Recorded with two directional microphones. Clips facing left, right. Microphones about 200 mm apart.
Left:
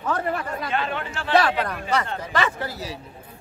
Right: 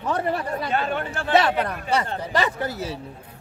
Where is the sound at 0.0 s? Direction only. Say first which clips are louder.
Right 1 dB; 25° right (ahead or behind); by 1.3 s 45° right (ahead or behind).